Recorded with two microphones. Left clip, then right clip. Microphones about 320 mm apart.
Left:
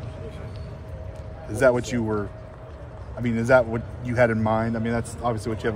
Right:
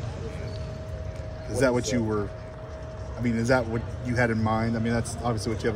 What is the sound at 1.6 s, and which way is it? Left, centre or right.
Speech, left.